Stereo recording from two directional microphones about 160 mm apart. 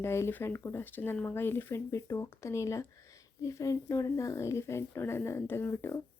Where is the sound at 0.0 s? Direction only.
15° left (ahead or behind).